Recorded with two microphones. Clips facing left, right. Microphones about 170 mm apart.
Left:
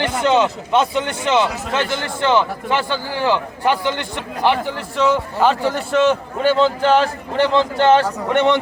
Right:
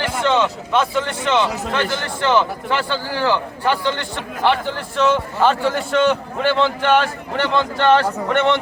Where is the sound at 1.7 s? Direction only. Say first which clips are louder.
Left 1 dB; 20° left (ahead or behind).